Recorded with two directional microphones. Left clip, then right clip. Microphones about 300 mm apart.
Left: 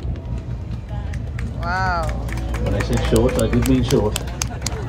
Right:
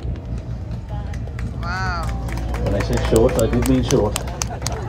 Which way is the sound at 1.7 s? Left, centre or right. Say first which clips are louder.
Left 4 dB; centre.